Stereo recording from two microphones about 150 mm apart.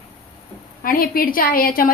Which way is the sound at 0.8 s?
75° left (ahead or behind).